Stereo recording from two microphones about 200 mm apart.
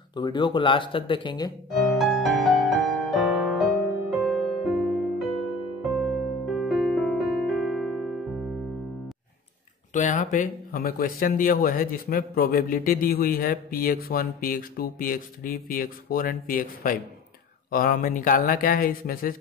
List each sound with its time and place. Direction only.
0.1 s speech: 20° left (ahead or behind)
1.7 s music: centre (ahead or behind)
9.9 s speech: 40° left (ahead or behind)